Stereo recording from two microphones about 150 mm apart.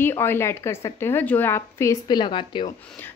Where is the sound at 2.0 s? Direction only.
30° left (ahead or behind).